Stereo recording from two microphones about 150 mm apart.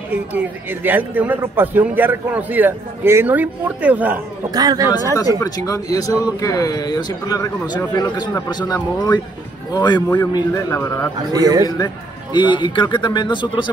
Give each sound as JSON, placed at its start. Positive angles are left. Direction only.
{"t": 0.1, "sound": "a man's voice", "side_deg": -10}
{"t": 4.5, "sound": "speech", "side_deg": -25}
{"t": 5.4, "sound": "speech", "side_deg": 25}
{"t": 11.3, "sound": "speech", "side_deg": -25}
{"t": 11.6, "sound": "a man's voice", "side_deg": 30}